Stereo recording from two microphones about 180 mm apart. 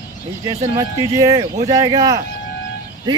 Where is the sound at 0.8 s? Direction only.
20° right (ahead or behind).